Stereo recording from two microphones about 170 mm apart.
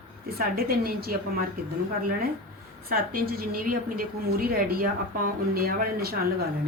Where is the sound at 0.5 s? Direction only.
60° right (ahead or behind).